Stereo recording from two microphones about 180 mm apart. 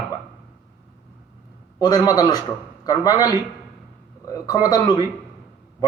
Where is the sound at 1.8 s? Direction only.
20° left (ahead or behind).